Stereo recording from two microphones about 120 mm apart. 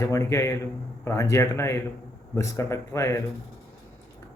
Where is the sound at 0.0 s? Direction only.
25° left (ahead or behind).